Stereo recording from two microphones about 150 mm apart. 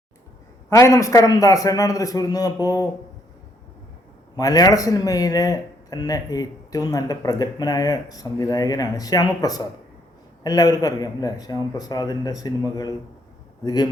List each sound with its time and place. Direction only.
0.7 s speech: 20° left (ahead or behind)
4.4 s speech: 25° left (ahead or behind)